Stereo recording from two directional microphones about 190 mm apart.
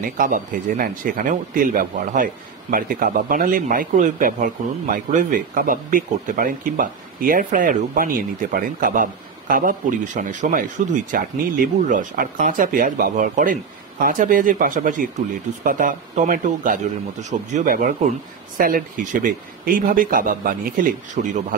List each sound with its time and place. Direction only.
0.0 s a man's voice: 45° right (ahead or behind)